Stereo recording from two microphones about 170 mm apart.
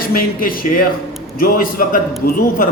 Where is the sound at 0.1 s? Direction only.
55° left (ahead or behind).